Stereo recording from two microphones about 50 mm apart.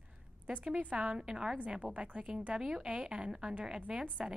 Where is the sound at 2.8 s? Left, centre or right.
Right.